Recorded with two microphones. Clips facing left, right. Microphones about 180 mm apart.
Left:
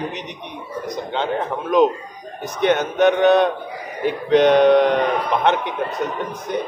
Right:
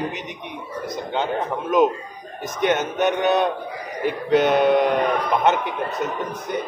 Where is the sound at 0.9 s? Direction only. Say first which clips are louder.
Left 1 dB; 10° right (ahead or behind).